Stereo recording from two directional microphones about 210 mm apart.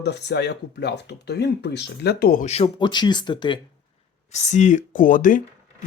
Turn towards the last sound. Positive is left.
turn(degrees=40)  # may be behind; listen again after turning